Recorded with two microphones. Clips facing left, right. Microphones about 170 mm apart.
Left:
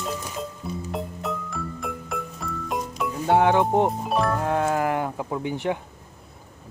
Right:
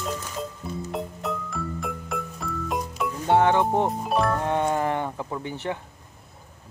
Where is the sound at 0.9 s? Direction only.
Centre (ahead or behind).